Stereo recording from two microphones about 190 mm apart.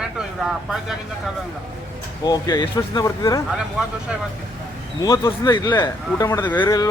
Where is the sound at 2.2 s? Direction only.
20° left (ahead or behind).